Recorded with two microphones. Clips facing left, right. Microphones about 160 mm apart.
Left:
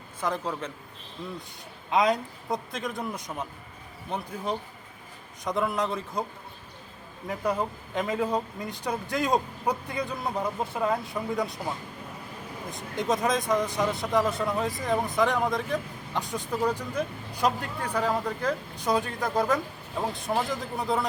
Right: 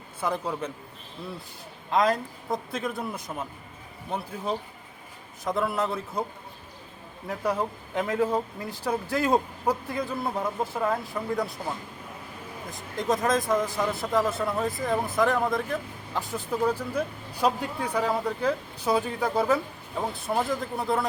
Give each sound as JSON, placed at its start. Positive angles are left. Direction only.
{"t": 0.2, "sound": "speech", "side_deg": -10}
{"t": 1.9, "sound": "speech", "side_deg": 0}
{"t": 5.5, "sound": "speech", "side_deg": -5}
{"t": 7.3, "sound": "speech", "side_deg": 0}
{"t": 12.7, "sound": "speech", "side_deg": 0}